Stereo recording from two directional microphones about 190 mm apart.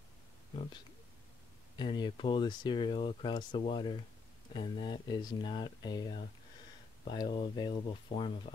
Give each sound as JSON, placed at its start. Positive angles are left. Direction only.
{"t": 1.8, "sound": "speech", "side_deg": 25}